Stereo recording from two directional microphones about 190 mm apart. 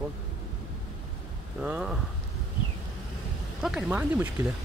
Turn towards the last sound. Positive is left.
turn(degrees=-10)  # may be behind; listen again after turning